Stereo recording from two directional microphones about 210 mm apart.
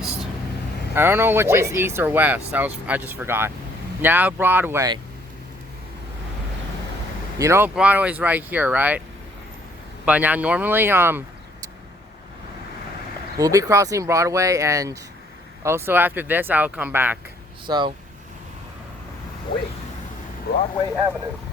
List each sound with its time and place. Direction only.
0.9 s speech: 10° right (ahead or behind)
7.3 s speech: 15° right (ahead or behind)
10.1 s speech: 5° right (ahead or behind)
13.3 s speech: 15° right (ahead or behind)
17.7 s speech: 20° right (ahead or behind)
20.5 s speech: 50° left (ahead or behind)